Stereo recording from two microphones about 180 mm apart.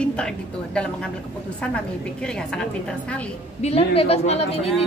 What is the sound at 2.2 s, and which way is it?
A woman's voice, 5° left (ahead or behind).